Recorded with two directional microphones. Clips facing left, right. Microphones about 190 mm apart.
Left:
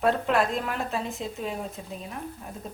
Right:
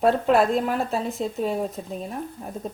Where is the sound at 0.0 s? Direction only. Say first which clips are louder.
Right 5 dB; 40° right (ahead or behind).